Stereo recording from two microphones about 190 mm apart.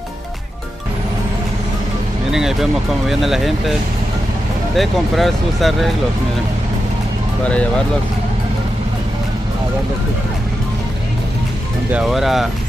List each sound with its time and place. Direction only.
2.3 s speech: centre (ahead or behind)
4.7 s speech: centre (ahead or behind)
11.9 s speech: centre (ahead or behind)